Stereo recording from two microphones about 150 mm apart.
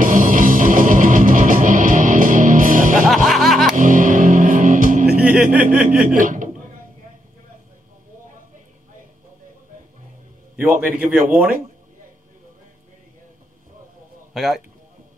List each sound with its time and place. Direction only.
0.0 s music: 60° right (ahead or behind)
3.1 s music: centre (ahead or behind)
3.7 s music: 60° right (ahead or behind)
5.4 s a sound: 65° right (ahead or behind)
5.9 s chuckle: 65° right (ahead or behind)
10.7 s a man's voice: 75° right (ahead or behind)
11.0 s speech: 10° right (ahead or behind)
14.3 s a man's voice: centre (ahead or behind)